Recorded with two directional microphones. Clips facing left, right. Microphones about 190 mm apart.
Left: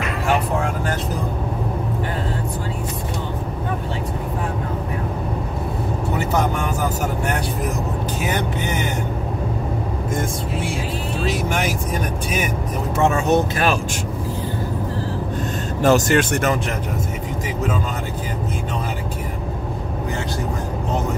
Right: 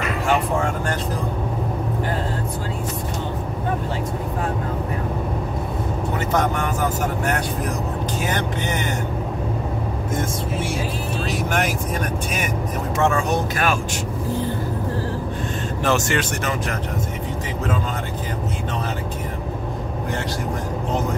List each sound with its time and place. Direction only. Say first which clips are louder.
11.2 s speech: left 1 dB; centre (ahead or behind)
13.0 s speech: left 3 dB; 25° left (ahead or behind)
15.8 s speech: left 6 dB; 40° left (ahead or behind)